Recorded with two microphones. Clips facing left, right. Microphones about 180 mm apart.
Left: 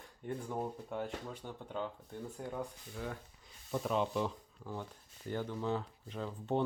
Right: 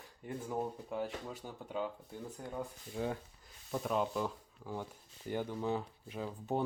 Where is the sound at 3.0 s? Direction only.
30° right (ahead or behind).